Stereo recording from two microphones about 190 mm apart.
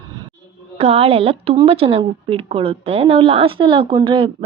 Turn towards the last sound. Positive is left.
turn(degrees=-30)  # may be behind; listen again after turning